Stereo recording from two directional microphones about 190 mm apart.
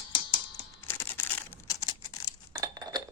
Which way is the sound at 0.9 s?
10° left (ahead or behind).